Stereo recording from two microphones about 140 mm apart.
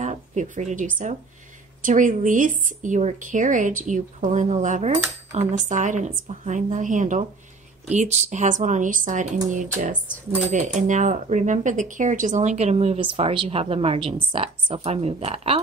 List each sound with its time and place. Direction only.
0.0 s speech: 60° right (ahead or behind)